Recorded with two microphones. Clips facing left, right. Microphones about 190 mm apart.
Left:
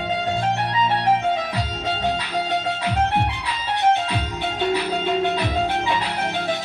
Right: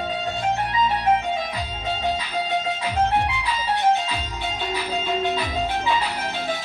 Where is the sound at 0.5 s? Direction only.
70° left (ahead or behind).